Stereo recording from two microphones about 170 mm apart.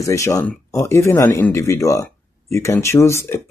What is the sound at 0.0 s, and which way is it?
Speech, 20° left (ahead or behind).